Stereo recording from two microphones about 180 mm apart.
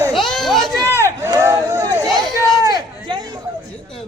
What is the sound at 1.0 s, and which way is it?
Crowd, 15° right (ahead or behind).